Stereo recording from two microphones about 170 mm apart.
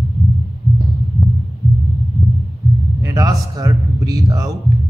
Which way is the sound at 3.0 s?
20° right (ahead or behind).